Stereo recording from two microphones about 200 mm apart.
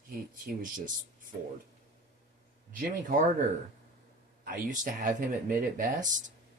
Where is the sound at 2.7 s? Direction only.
40° right (ahead or behind).